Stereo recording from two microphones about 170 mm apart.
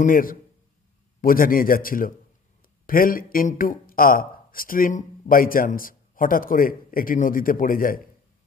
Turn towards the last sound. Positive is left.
turn(degrees=55)  # may be behind; listen again after turning